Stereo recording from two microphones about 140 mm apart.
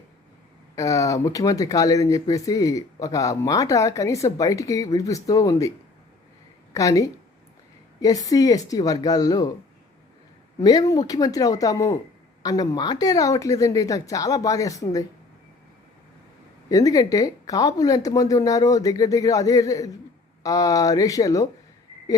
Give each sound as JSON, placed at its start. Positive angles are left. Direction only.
{"t": 0.8, "sound": "speech", "side_deg": 25}
{"t": 6.7, "sound": "speech", "side_deg": 25}
{"t": 10.6, "sound": "speech", "side_deg": 25}
{"t": 16.6, "sound": "speech", "side_deg": 25}